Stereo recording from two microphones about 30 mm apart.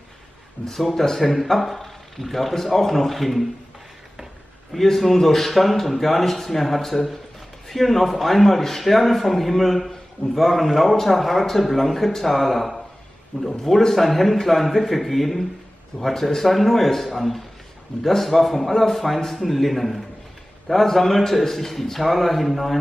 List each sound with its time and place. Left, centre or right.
0.6 s speech: left
1.2 s a man's voice: centre
4.8 s a man's voice: centre
13.3 s a man's voice: right
13.7 s a man's voice: centre
16.4 s a man's voice: centre